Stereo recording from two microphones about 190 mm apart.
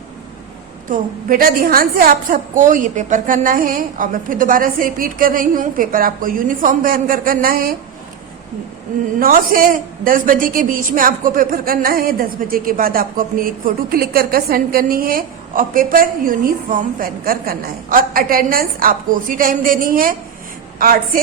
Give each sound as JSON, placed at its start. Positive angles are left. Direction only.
{"t": 0.9, "sound": "a woman's voice", "side_deg": -50}
{"t": 9.1, "sound": "a woman's voice", "side_deg": -45}